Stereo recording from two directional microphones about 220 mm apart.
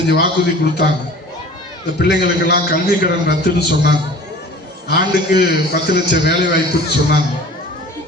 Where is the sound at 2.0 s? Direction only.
45° left (ahead or behind).